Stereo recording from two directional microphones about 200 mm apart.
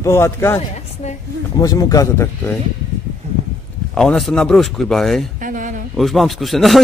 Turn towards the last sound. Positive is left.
turn(degrees=0)  # may be behind; listen again after turning